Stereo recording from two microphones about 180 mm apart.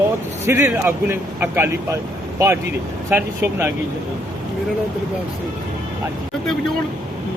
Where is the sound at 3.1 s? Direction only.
15° right (ahead or behind).